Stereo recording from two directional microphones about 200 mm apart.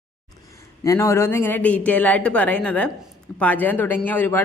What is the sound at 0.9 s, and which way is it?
Speech, 15° left (ahead or behind).